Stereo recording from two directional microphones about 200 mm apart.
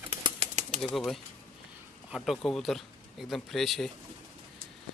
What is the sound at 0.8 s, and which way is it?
Speech, 5° left (ahead or behind).